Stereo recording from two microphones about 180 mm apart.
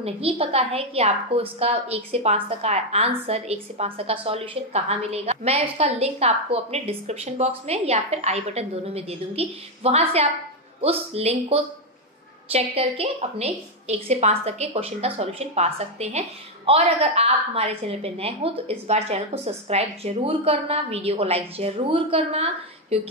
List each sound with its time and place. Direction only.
0.0 s a woman's voice: 30° right (ahead or behind)